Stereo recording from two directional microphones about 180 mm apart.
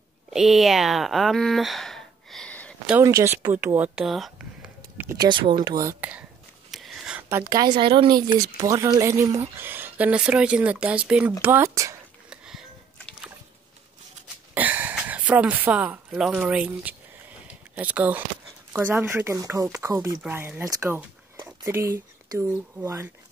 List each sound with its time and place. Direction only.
0.3 s speech: centre (ahead or behind)
2.9 s speech: 20° right (ahead or behind)
5.9 s speech: 5° right (ahead or behind)
6.7 s a sound: centre (ahead or behind); by 8.3 s 25° right (ahead or behind)
8.5 s speech: 20° right (ahead or behind)
12.3 s music: 5° right (ahead or behind)
14.5 s speech: 10° right (ahead or behind)